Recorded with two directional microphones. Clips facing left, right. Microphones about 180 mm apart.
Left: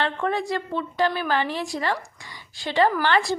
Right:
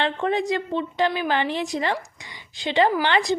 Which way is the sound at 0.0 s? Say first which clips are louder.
Right 2 dB; 20° right (ahead or behind).